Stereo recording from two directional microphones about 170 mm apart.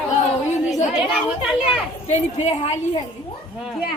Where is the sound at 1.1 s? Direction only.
5° right (ahead or behind).